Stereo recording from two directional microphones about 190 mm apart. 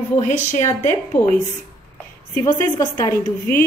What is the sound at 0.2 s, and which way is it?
Speech, 40° left (ahead or behind).